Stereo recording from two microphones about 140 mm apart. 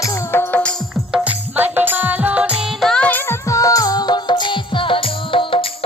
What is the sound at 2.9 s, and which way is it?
Music, 10° left (ahead or behind).